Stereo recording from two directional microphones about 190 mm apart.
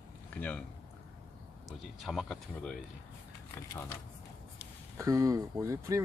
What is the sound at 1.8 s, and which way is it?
Speech, centre (ahead or behind).